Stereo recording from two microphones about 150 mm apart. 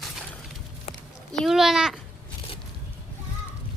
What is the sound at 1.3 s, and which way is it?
Speech, centre (ahead or behind).